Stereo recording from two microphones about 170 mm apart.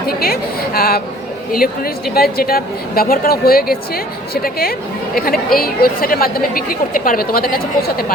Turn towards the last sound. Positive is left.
turn(degrees=55)  # may be behind; listen again after turning